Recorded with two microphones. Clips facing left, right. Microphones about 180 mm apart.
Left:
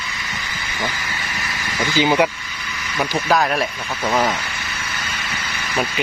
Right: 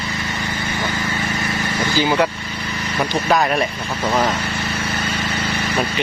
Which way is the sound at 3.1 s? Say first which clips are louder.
Right 1 dB; centre (ahead or behind).